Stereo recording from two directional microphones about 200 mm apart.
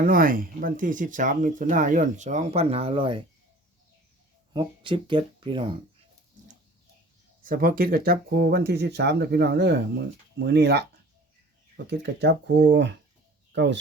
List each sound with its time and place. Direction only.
0.0 s speech: 45° right (ahead or behind); by 3.2 s 25° right (ahead or behind)
4.5 s speech: 25° right (ahead or behind)
7.4 s speech: 45° right (ahead or behind)
11.9 s speech: 55° right (ahead or behind)